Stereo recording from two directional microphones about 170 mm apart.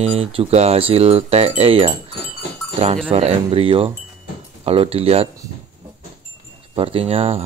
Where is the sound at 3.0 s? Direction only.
35° right (ahead or behind).